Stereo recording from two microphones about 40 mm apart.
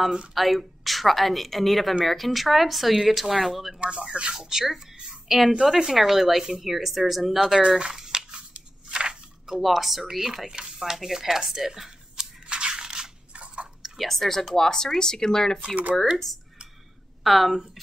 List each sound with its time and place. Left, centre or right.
0.3 s speech: centre
4.1 s speech: right
4.5 s speech: centre
7.6 s speech: centre
8.3 s a sound: right
9.6 s speech: centre
11.4 s a sound: centre
12.4 s crushing: right
13.9 s speech: centre
17.2 s speech: centre